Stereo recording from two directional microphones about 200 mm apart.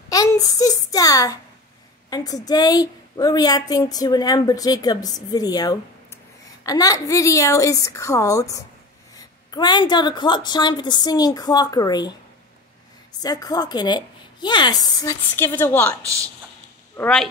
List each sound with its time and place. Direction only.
0.1 s a child's voice: 15° left (ahead or behind)
13.2 s a woman's voice: 20° left (ahead or behind)